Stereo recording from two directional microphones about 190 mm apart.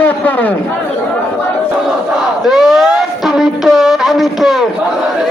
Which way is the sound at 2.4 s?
Centre (ahead or behind).